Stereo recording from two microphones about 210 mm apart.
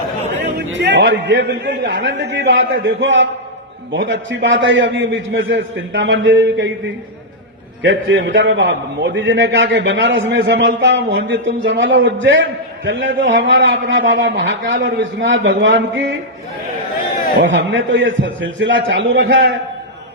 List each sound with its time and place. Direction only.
0.5 s a man's voice: 60° right (ahead or behind)
7.8 s a man's voice: 60° right (ahead or behind)
17.4 s a man's voice: 60° right (ahead or behind)